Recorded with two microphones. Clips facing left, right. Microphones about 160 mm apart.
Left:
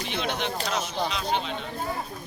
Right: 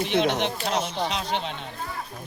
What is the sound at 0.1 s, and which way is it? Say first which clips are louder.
Speech: right 5 dB; 65° right (ahead or behind).